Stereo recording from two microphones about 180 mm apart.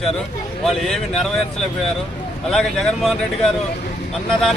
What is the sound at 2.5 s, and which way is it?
Speech, centre (ahead or behind).